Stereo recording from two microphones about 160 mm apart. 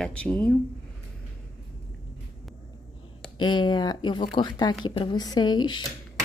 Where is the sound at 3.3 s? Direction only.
30° left (ahead or behind).